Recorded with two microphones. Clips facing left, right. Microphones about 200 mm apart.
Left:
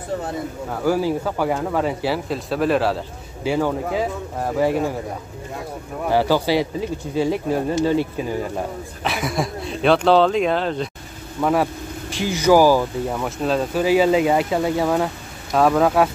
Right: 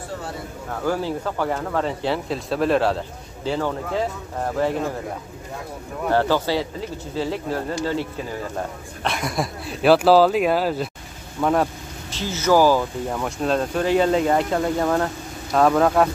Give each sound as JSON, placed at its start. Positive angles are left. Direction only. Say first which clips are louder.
{"t": 0.8, "sound": "speech", "louder": "left 4 dB", "side_deg": 10}
{"t": 6.0, "sound": "speech", "louder": "left 2 dB", "side_deg": 10}
{"t": 9.0, "sound": "speech", "louder": "left 1 dB", "side_deg": 0}